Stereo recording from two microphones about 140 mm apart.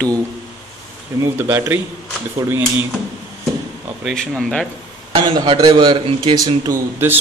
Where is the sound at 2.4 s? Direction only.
25° right (ahead or behind).